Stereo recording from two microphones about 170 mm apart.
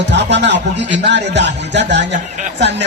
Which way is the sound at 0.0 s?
90° right.